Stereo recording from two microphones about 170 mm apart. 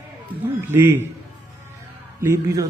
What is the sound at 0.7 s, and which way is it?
Speech, 15° right (ahead or behind).